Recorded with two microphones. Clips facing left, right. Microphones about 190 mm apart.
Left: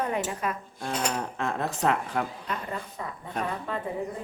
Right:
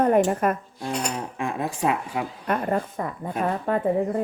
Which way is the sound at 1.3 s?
15° right (ahead or behind).